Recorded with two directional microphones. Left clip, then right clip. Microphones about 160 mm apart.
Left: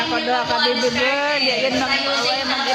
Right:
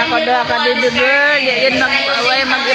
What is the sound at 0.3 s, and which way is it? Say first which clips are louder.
Speech: right 5 dB; 10° left (ahead or behind).